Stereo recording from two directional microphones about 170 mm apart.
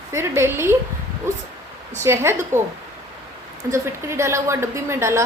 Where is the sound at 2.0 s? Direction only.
15° right (ahead or behind).